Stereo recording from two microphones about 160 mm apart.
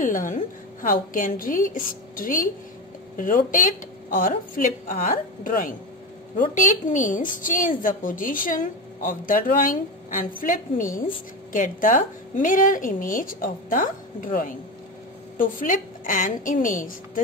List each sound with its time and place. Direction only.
0.0 s a woman's voice: 55° left (ahead or behind)